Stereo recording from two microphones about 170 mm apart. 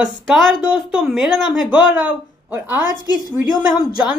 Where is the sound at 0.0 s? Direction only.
Centre (ahead or behind).